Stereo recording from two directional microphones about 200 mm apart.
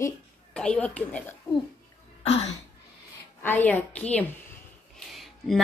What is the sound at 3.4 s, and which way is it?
A woman's voice, 10° left (ahead or behind).